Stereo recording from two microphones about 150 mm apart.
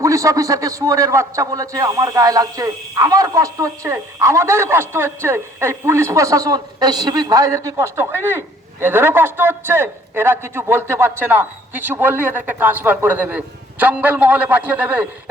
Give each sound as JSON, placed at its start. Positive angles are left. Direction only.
{"t": 0.0, "sound": "a man's voice", "side_deg": -20}